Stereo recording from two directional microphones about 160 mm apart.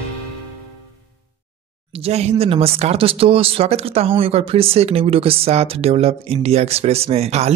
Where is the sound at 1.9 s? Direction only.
40° right (ahead or behind).